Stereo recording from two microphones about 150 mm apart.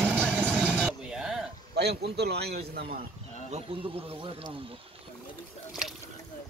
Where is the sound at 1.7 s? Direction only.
90° right.